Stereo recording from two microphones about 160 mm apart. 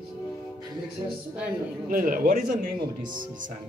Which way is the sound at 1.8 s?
60° right (ahead or behind).